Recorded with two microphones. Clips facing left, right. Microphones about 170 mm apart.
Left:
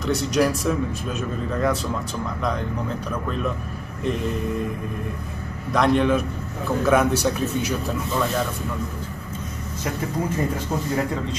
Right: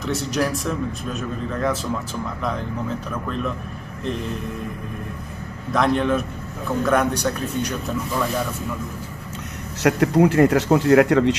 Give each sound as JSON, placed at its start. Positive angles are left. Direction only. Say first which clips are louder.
{"t": 0.0, "sound": "a man's voice", "louder": "left 2 dB", "side_deg": 0}
{"t": 5.7, "sound": "a man's voice", "louder": "left 1 dB", "side_deg": 0}
{"t": 9.8, "sound": "speech", "louder": "right 10 dB", "side_deg": -75}